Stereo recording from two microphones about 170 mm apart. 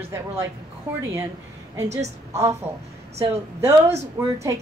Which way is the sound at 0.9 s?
10° right (ahead or behind).